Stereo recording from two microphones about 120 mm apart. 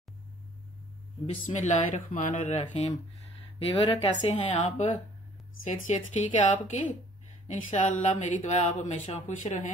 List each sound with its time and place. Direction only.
1.2 s speech: 75° left (ahead or behind)
3.5 s speech: 50° left (ahead or behind)
4.3 s a woman's voice: 60° left (ahead or behind); by 9.7 s 90° left